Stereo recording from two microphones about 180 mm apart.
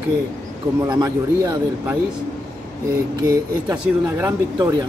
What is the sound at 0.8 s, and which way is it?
Speech, 20° right (ahead or behind).